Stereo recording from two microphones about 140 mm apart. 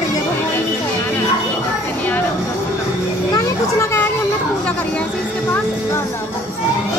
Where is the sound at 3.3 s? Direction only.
20° left (ahead or behind).